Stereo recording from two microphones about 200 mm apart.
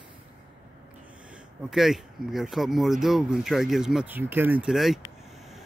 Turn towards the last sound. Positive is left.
turn(degrees=0)  # may be behind; listen again after turning